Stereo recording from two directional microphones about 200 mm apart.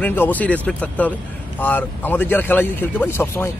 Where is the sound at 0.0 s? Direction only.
10° left (ahead or behind).